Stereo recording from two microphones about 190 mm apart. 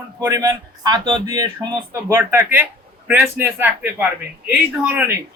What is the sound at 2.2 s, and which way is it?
A man's voice, 10° right (ahead or behind).